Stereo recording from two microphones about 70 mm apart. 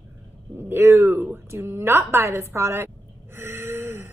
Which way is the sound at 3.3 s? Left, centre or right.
Right.